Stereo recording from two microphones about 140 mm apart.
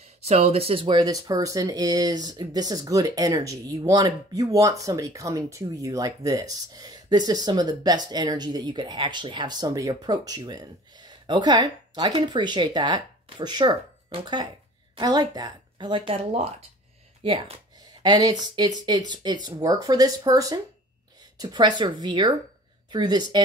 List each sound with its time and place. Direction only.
0.0 s speech: 50° right (ahead or behind); by 13.7 s 30° right (ahead or behind)
15.0 s speech: 30° right (ahead or behind)